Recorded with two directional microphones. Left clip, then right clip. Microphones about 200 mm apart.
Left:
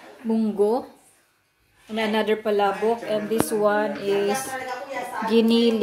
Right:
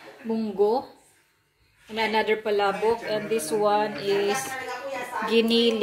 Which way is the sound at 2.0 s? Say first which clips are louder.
Left 1 dB; 15° left (ahead or behind).